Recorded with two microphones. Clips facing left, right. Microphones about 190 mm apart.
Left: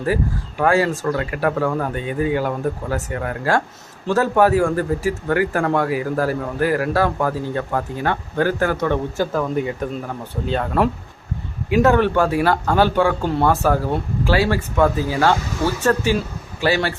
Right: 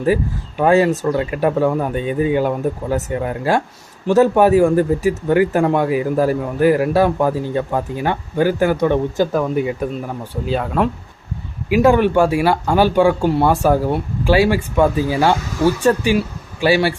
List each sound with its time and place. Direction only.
0.0 s speech: 20° right (ahead or behind)